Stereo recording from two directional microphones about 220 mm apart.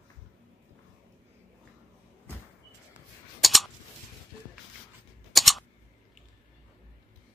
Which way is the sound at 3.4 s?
Centre (ahead or behind).